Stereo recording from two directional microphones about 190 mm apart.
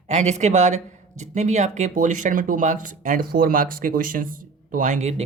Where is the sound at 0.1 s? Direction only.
40° right (ahead or behind).